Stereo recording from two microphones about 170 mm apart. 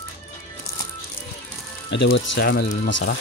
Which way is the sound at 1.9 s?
90° left.